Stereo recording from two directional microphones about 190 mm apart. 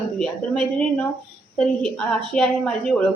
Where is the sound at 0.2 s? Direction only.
Centre (ahead or behind).